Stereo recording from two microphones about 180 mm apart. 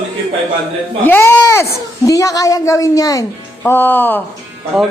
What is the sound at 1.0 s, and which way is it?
Speech, 10° left (ahead or behind).